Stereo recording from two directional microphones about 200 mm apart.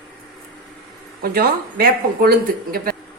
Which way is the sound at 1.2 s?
50° right (ahead or behind).